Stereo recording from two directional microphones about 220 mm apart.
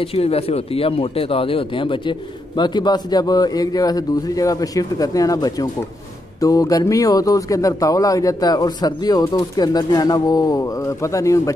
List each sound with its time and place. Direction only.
0.0 s speech: 25° left (ahead or behind)